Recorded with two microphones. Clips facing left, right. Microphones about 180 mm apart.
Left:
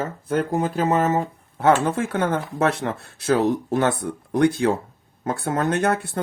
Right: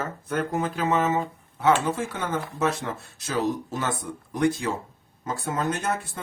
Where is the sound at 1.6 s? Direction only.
55° left (ahead or behind).